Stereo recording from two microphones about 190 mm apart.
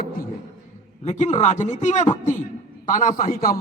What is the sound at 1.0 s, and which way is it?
A man's voice, 35° left (ahead or behind).